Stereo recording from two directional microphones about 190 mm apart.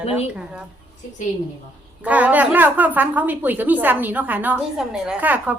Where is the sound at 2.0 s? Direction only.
10° right (ahead or behind).